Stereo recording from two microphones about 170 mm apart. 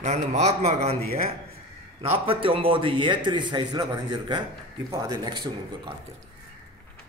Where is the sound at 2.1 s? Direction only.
35° right (ahead or behind).